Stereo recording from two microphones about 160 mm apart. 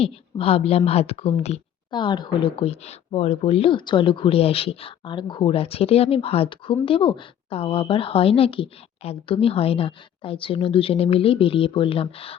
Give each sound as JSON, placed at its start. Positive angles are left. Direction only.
{"t": 0.0, "sound": "a woman's voice", "side_deg": 35}
{"t": 1.9, "sound": "a woman's voice", "side_deg": 30}